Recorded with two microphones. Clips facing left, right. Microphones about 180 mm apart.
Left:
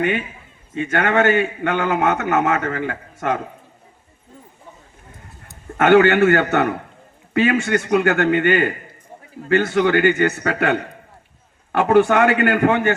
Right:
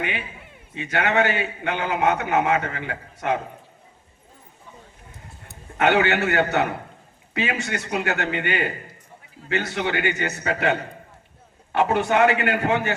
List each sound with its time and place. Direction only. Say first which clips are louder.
0.7 s a man's voice: left 4 dB; 50° left (ahead or behind)
5.7 s a man's voice: left 7 dB; 50° left (ahead or behind)